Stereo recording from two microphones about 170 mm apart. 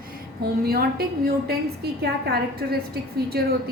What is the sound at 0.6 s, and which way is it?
A woman's voice, 65° right (ahead or behind).